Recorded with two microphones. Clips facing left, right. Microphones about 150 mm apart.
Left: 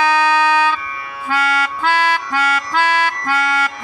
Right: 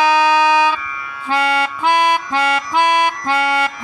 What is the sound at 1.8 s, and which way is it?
Music, 15° right (ahead or behind).